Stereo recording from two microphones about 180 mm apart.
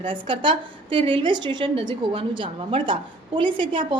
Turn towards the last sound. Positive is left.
turn(degrees=-25)  # may be behind; listen again after turning